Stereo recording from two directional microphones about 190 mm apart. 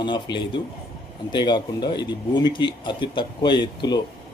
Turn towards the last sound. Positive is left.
turn(degrees=25)  # may be behind; listen again after turning